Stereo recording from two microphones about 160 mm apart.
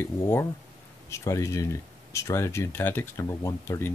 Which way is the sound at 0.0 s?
15° left (ahead or behind).